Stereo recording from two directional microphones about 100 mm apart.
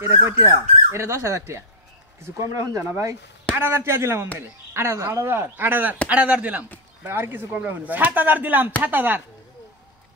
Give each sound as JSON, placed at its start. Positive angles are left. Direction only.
{"t": 0.0, "sound": "speech", "side_deg": -30}